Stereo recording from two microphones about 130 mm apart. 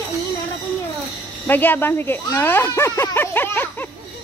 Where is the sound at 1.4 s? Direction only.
15° left (ahead or behind).